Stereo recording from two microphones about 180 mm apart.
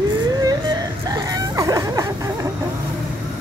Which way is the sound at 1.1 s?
20° right (ahead or behind).